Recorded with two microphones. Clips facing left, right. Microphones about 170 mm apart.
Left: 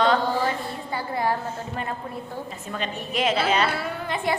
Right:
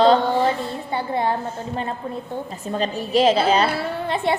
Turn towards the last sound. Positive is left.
turn(degrees=-30)  # may be behind; listen again after turning